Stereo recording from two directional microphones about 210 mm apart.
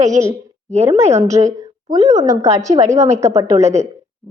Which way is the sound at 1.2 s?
30° right (ahead or behind).